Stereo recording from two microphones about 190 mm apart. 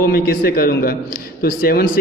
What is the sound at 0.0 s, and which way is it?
Speech, 50° left (ahead or behind).